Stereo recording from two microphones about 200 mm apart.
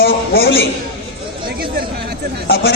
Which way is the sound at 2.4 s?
50° left (ahead or behind).